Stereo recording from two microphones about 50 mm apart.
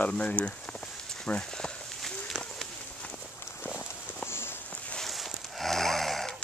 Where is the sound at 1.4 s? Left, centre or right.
Centre.